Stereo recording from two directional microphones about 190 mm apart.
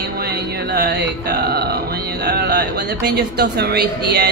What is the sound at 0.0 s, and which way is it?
Music, 55° right (ahead or behind).